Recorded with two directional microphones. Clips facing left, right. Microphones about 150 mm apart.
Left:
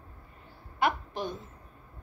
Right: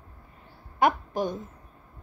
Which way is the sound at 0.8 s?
45° right (ahead or behind).